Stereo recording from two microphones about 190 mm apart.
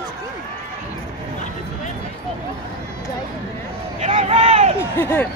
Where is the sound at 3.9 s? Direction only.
40° right (ahead or behind).